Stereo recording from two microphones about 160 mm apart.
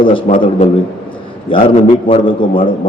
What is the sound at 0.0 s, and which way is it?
Speech, 30° left (ahead or behind).